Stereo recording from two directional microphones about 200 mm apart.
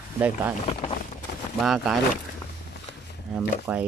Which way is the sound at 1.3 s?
55° left (ahead or behind).